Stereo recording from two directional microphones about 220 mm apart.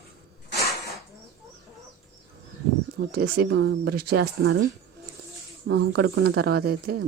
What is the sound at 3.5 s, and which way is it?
Speech, 55° right (ahead or behind).